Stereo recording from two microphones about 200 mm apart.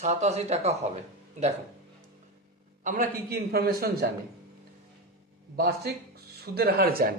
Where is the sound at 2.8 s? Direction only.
45° right (ahead or behind).